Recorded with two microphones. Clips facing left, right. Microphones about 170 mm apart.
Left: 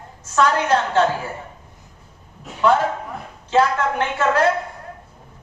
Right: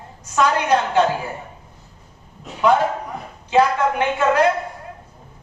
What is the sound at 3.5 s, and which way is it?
Speech, 15° right (ahead or behind).